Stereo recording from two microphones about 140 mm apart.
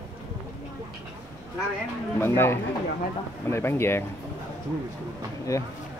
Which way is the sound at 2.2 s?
15° left (ahead or behind).